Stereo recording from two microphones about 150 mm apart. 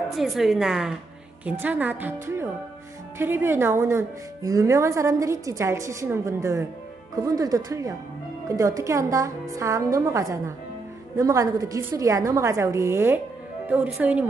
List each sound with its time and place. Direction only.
0.1 s a woman's voice: centre (ahead or behind)